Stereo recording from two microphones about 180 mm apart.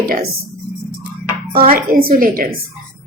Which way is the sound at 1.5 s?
55° right (ahead or behind).